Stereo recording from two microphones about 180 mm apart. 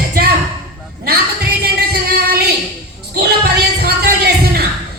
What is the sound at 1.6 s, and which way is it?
Music, 60° right (ahead or behind).